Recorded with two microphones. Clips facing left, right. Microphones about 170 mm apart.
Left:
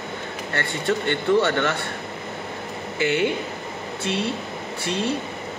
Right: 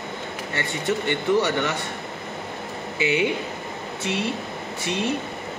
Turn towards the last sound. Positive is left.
turn(degrees=-20)  # may be behind; listen again after turning